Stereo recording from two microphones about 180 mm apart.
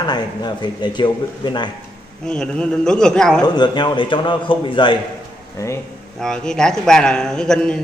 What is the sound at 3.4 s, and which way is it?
A man's voice, 25° left (ahead or behind).